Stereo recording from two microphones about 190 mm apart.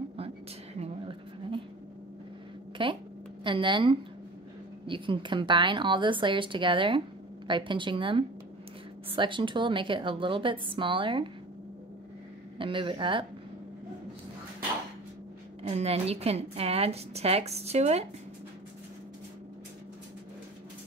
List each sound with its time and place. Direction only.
0.7 s a sound: 30° right (ahead or behind)
2.8 s a woman's voice: 25° right (ahead or behind)
12.5 s a woman's voice: 25° right (ahead or behind)
15.6 s a woman's voice: 30° right (ahead or behind)